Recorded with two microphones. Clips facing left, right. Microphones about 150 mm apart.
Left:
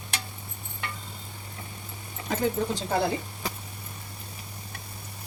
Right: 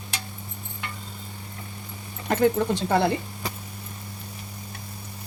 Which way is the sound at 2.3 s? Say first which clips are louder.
Right 6 dB; 60° right (ahead or behind).